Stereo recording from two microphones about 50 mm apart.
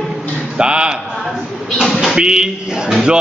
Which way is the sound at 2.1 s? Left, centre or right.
Centre.